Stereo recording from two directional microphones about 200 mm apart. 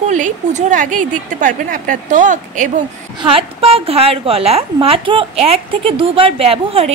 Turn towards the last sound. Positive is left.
turn(degrees=-30)  # may be behind; listen again after turning